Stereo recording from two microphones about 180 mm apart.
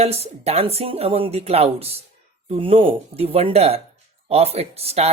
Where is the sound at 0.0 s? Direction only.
35° right (ahead or behind).